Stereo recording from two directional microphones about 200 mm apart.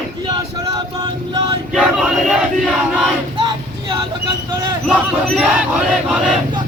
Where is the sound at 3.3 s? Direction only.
25° right (ahead or behind).